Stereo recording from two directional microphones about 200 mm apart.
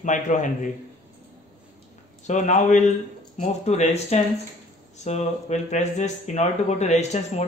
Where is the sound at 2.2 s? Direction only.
35° left (ahead or behind).